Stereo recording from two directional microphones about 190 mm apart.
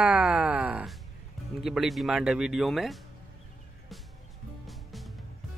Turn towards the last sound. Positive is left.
turn(degrees=0)  # may be behind; listen again after turning